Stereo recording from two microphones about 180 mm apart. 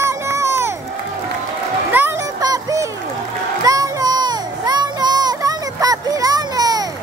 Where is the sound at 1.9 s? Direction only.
10° right (ahead or behind).